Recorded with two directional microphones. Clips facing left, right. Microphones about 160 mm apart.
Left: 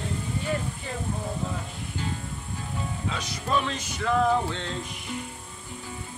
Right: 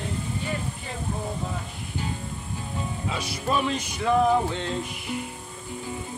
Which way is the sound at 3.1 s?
10° right (ahead or behind).